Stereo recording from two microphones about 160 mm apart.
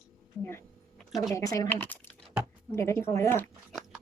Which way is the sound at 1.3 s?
20° left (ahead or behind).